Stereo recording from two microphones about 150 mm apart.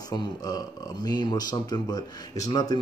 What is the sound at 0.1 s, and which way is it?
Speech, 25° left (ahead or behind).